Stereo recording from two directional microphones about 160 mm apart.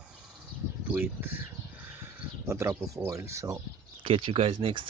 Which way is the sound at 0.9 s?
15° right (ahead or behind).